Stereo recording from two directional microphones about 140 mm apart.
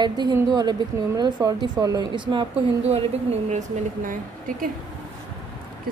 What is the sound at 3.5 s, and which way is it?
Speech, 65° right (ahead or behind).